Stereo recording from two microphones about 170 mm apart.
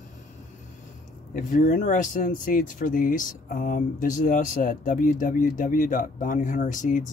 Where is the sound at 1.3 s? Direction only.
50° left (ahead or behind).